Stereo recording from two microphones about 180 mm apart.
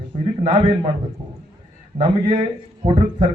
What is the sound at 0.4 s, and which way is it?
Speech, 35° right (ahead or behind).